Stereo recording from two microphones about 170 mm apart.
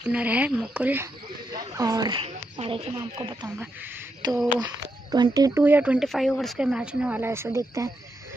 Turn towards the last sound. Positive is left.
turn(degrees=-20)  # may be behind; listen again after turning